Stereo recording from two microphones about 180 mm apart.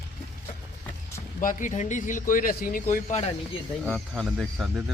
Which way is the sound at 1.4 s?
45° left (ahead or behind).